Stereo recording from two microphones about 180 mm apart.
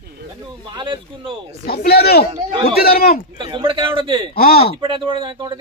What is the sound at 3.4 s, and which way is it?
Speech, 25° right (ahead or behind).